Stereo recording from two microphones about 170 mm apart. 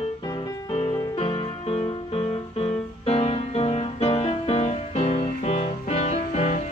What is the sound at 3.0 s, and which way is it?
Music, 35° left (ahead or behind).